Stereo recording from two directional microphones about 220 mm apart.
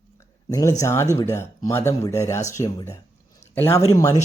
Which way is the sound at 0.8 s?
10° left (ahead or behind).